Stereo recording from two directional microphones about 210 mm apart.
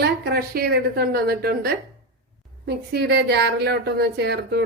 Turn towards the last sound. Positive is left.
turn(degrees=-50)  # may be behind; listen again after turning